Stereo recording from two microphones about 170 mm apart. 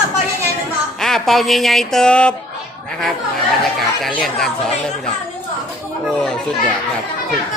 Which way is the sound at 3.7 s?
Centre (ahead or behind).